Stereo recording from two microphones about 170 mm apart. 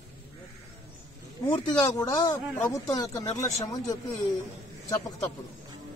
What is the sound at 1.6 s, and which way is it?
Speech, 25° left (ahead or behind).